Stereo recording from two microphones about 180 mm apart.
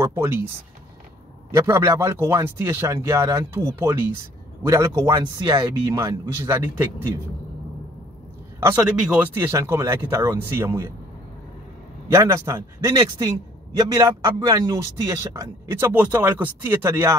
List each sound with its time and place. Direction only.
0.0 s a man's voice: 15° right (ahead or behind)
1.5 s a man's voice: 15° right (ahead or behind)
8.5 s a man's voice: 10° right (ahead or behind)
12.1 s a man's voice: 15° right (ahead or behind)